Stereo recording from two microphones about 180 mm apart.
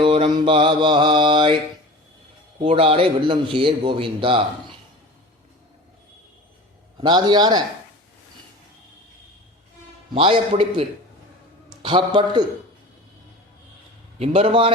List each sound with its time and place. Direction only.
0.0 s a man's voice: 30° right (ahead or behind)
2.6 s a man's voice: 35° right (ahead or behind)
7.0 s a man's voice: 25° right (ahead or behind)
10.2 s a man's voice: 30° right (ahead or behind)
11.8 s a man's voice: 25° right (ahead or behind)
14.2 s a man's voice: 35° right (ahead or behind)